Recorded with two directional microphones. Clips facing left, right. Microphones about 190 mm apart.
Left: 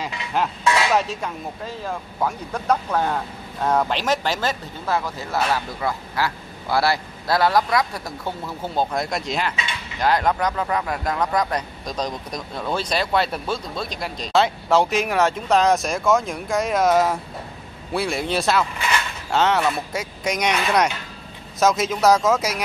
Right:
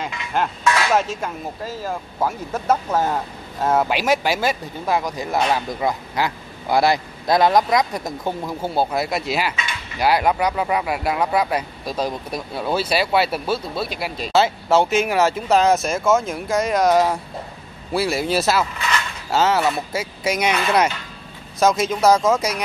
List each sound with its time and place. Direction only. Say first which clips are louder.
0.9 s speech: right 1 dB; centre (ahead or behind)